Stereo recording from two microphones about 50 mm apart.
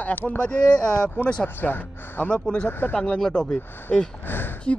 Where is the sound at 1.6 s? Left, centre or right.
Left.